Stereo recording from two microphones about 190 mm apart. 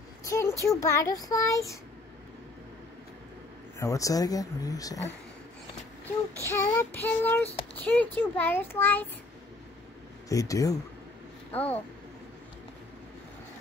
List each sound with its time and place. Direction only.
0.2 s child singing: 15° left (ahead or behind)
0.7 s speech: 15° left (ahead or behind)
3.8 s speech: 15° left (ahead or behind)
6.4 s speech: 10° left (ahead or behind)
10.3 s speech: 20° left (ahead or behind)